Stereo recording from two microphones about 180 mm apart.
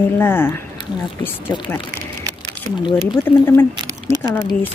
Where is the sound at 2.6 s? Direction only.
25° right (ahead or behind).